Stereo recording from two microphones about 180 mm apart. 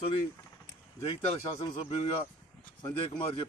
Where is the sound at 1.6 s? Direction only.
25° left (ahead or behind).